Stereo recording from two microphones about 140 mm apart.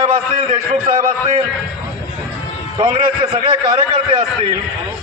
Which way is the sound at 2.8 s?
40° right (ahead or behind).